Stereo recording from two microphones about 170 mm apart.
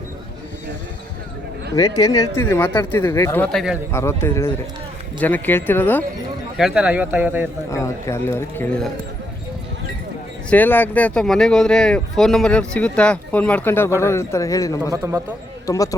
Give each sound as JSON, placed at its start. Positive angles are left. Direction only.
{"t": 1.7, "sound": "speech", "side_deg": 20}
{"t": 6.6, "sound": "speech", "side_deg": -5}
{"t": 7.7, "sound": "speech", "side_deg": 20}
{"t": 10.5, "sound": "speech", "side_deg": 10}
{"t": 14.9, "sound": "speech", "side_deg": -15}
{"t": 15.6, "sound": "speech", "side_deg": 20}